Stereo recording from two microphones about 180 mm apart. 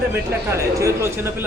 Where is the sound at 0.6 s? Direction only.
15° right (ahead or behind).